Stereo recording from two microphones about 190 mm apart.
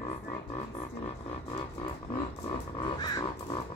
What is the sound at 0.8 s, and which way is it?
Music, 30° left (ahead or behind).